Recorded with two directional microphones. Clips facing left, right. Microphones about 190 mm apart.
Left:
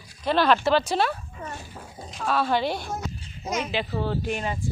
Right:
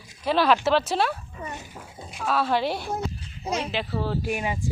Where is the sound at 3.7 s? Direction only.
Centre (ahead or behind).